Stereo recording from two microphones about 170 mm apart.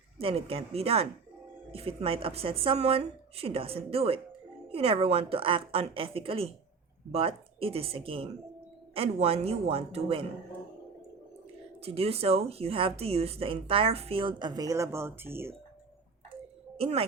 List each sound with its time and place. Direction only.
0.2 s a woman's voice: 35° right (ahead or behind)
11.8 s a woman's voice: 35° right (ahead or behind); by 15.5 s 15° right (ahead or behind)
16.7 s speech: 35° right (ahead or behind)